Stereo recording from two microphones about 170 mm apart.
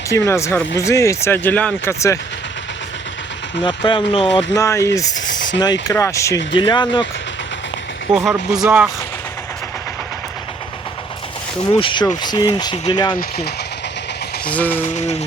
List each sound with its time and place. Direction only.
0.1 s speech: 15° left (ahead or behind)
3.6 s speech: 30° left (ahead or behind)
4.5 s speech: 15° left (ahead or behind)
8.1 s speech: 5° right (ahead or behind)
11.8 s speech: 30° left (ahead or behind)
13.1 s speech: 65° left (ahead or behind)
14.4 s speech: 10° left (ahead or behind)
14.9 s speech: 40° left (ahead or behind)